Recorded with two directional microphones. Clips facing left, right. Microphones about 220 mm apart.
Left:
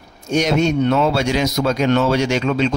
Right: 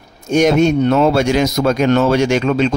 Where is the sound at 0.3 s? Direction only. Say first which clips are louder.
Right 5 dB; 50° right (ahead or behind).